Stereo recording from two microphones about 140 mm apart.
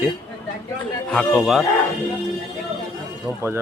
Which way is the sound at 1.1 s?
10° left (ahead or behind).